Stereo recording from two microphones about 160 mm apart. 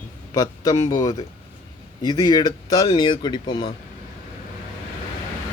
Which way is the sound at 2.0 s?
25° left (ahead or behind).